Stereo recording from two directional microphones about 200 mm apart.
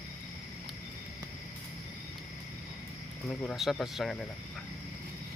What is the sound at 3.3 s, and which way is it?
Speech, centre (ahead or behind).